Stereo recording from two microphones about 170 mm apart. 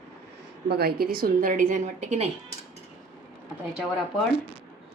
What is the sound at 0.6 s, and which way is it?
A woman's voice, 65° right (ahead or behind).